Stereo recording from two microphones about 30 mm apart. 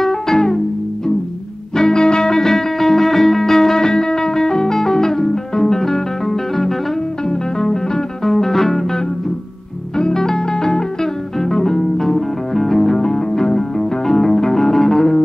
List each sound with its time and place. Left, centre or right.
0.0 s music: centre
1.8 s music: left; by 6.7 s centre
7.2 s music: centre
9.9 s music: left; by 13.0 s centre
13.0 s music: left